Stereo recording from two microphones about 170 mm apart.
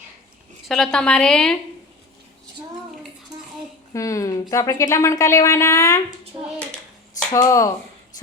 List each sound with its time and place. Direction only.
0.7 s a woman's voice: centre (ahead or behind)
3.9 s speech: 20° left (ahead or behind)
7.3 s speech: 20° left (ahead or behind)